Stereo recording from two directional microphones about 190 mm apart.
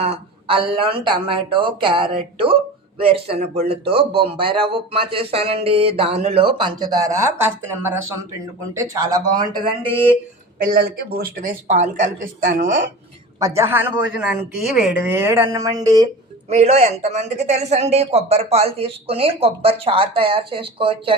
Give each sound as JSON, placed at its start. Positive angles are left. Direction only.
{"t": 0.0, "sound": "speech", "side_deg": -30}
{"t": 10.6, "sound": "speech", "side_deg": -50}
{"t": 12.5, "sound": "speech", "side_deg": -70}
{"t": 13.6, "sound": "speech", "side_deg": -10}
{"t": 16.5, "sound": "speech", "side_deg": -35}